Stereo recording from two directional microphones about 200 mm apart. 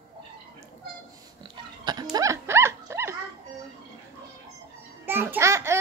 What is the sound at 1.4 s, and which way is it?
Pig, 20° right (ahead or behind).